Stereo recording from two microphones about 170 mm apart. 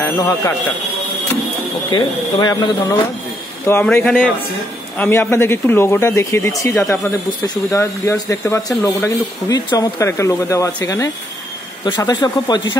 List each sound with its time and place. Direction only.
0.0 s speech: 15° left (ahead or behind)
1.9 s speech: 30° left (ahead or behind)
3.6 s speech: 10° left (ahead or behind)